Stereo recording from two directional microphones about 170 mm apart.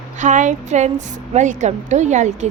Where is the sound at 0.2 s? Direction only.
45° right (ahead or behind).